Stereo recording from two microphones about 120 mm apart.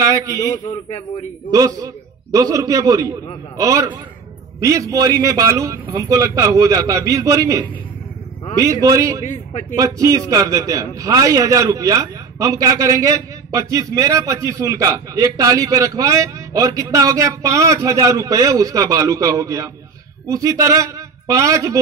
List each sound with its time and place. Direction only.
1.5 s a man's voice: 30° right (ahead or behind)
9.5 s speech: 75° left (ahead or behind)
9.8 s a man's voice: 30° right (ahead or behind)